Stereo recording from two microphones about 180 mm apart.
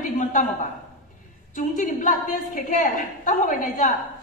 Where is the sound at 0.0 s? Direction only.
45° left (ahead or behind).